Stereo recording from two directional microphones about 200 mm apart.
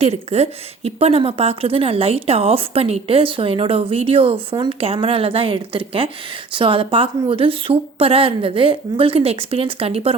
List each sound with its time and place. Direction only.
0.0 s a woman's voice: 30° right (ahead or behind)